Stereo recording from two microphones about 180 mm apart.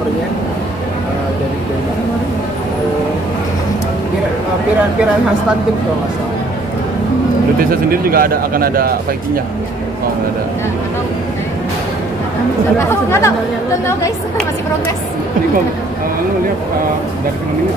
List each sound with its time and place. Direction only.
7.9 s a man's voice: 55° right (ahead or behind)
12.7 s speech: 15° left (ahead or behind)